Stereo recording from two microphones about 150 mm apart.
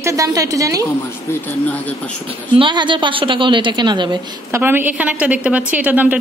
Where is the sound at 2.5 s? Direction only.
30° right (ahead or behind).